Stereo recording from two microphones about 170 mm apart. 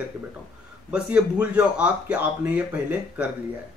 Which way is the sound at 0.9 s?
5° right (ahead or behind).